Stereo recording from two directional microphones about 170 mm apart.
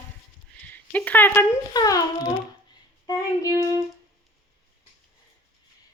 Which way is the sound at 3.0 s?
20° left (ahead or behind).